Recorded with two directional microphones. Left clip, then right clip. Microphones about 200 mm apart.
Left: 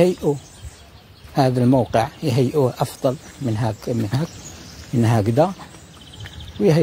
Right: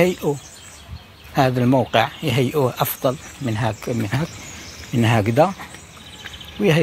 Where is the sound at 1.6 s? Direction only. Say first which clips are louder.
Even; 5° left (ahead or behind).